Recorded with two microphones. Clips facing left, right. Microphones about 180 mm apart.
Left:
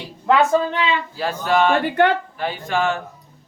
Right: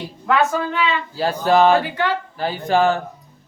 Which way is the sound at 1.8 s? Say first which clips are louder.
Left 5 dB; 55° left (ahead or behind).